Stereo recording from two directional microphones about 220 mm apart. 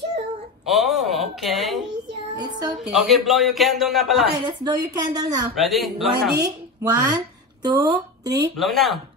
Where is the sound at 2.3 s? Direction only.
20° right (ahead or behind).